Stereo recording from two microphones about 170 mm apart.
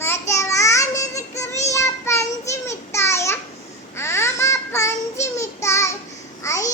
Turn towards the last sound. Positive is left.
turn(degrees=20)  # may be behind; listen again after turning